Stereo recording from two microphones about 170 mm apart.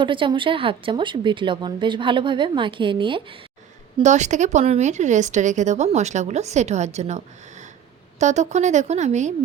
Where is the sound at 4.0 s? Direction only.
45° right (ahead or behind).